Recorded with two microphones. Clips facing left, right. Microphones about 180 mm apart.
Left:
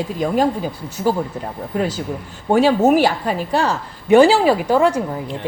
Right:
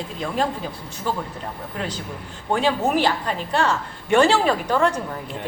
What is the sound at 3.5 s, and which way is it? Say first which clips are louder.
Speech: left 2 dB; 35° left (ahead or behind).